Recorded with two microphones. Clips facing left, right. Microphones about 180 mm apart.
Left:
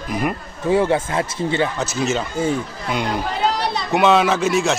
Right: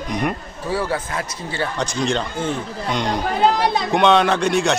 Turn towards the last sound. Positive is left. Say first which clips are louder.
# even
turn(degrees=0)  # may be behind; listen again after turning